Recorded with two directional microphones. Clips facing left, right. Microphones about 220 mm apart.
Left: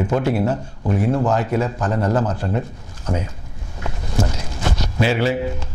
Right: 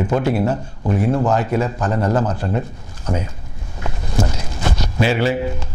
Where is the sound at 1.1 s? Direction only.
30° right (ahead or behind).